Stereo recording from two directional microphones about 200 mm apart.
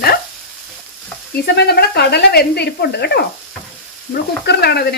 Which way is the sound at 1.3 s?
55° left (ahead or behind).